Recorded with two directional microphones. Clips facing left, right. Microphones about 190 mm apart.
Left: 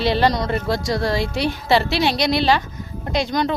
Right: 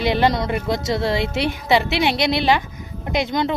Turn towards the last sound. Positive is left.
turn(degrees=-20)  # may be behind; listen again after turning